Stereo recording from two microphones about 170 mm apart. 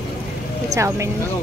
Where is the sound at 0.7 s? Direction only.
15° right (ahead or behind).